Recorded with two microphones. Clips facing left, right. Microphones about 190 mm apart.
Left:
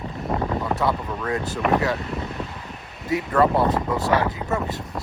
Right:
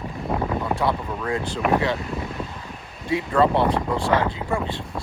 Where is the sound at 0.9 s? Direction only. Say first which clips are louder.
Even; centre (ahead or behind).